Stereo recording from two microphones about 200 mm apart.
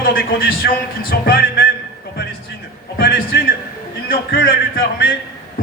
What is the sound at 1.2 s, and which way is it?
Speech, 50° left (ahead or behind).